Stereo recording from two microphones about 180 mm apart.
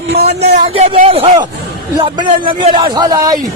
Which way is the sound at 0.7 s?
35° right (ahead or behind).